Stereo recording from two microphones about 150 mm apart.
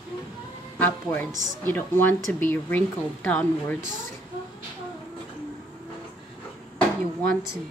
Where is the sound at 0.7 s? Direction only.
10° left (ahead or behind).